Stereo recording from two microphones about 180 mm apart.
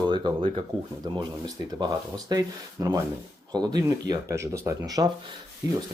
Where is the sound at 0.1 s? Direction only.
25° right (ahead or behind).